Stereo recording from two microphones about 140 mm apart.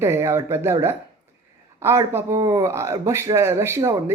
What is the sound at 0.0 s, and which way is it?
Speech, 20° right (ahead or behind).